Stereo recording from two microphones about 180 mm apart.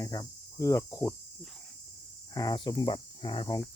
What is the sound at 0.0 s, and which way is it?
Cricket, 20° left (ahead or behind).